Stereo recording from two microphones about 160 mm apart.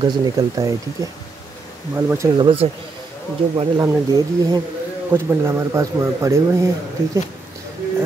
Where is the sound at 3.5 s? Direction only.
30° right (ahead or behind).